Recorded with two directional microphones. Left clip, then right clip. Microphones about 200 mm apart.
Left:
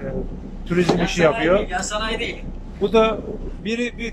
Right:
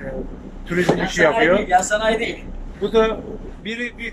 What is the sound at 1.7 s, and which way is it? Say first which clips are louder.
Speech: right 7 dB; 30° right (ahead or behind).